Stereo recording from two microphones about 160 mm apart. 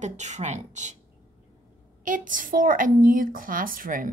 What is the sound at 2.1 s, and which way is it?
Speech, 55° right (ahead or behind).